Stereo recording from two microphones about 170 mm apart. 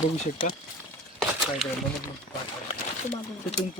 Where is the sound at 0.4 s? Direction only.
30° left (ahead or behind).